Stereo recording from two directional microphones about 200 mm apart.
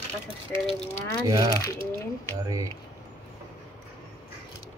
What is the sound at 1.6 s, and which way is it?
Speech, 10° left (ahead or behind).